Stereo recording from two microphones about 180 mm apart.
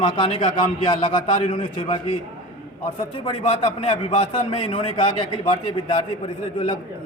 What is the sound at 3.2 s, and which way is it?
A man's voice, 30° left (ahead or behind).